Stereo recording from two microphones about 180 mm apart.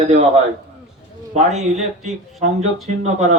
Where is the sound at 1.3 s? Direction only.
40° right (ahead or behind).